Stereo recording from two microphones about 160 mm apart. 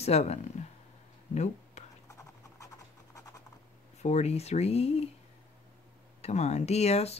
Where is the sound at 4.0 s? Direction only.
45° left (ahead or behind).